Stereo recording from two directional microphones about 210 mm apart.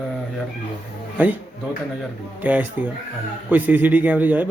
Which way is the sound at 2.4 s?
10° right (ahead or behind).